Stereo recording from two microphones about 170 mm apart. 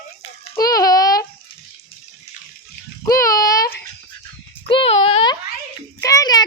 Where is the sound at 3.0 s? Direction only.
20° left (ahead or behind).